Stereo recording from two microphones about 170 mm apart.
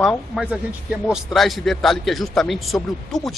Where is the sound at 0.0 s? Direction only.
Centre (ahead or behind).